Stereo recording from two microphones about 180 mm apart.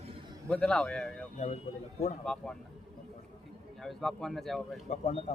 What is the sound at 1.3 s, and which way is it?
Speech, 35° left (ahead or behind).